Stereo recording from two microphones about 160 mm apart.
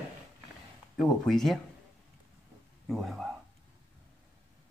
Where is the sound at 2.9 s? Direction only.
Centre (ahead or behind).